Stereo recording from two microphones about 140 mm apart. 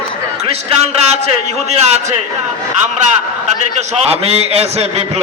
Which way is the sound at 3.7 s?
50° right (ahead or behind).